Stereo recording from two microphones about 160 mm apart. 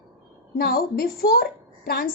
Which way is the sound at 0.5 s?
70° left (ahead or behind).